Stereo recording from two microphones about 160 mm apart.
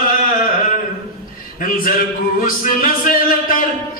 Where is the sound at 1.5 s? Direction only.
60° left (ahead or behind).